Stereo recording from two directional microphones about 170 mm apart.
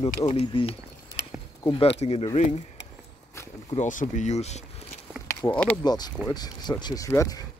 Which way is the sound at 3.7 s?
45° left (ahead or behind).